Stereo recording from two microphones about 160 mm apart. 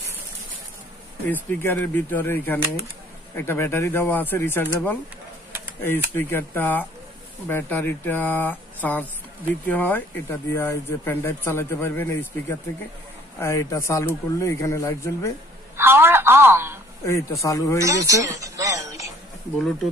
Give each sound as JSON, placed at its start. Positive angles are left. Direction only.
{"t": 1.3, "sound": "a man's voice", "side_deg": 10}
{"t": 15.7, "sound": "telephone", "side_deg": -15}
{"t": 17.0, "sound": "a man's voice", "side_deg": 20}
{"t": 17.7, "sound": "a sound", "side_deg": -20}